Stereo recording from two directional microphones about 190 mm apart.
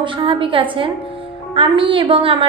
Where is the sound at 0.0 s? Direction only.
25° right (ahead or behind).